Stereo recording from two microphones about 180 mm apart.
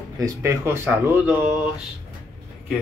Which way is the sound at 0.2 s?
20° right (ahead or behind).